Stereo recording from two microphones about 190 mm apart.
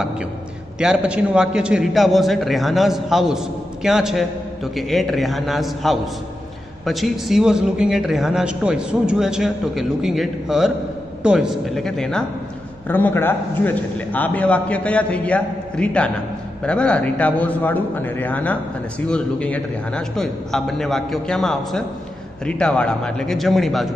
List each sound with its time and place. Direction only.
0.7 s a man's voice: 5° right (ahead or behind)